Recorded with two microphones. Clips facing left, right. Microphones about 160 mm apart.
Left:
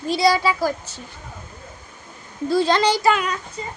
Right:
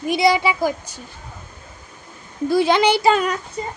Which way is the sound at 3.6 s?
50° right (ahead or behind).